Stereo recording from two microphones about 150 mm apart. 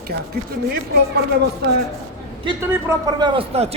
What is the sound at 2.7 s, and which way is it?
Speech, 25° right (ahead or behind).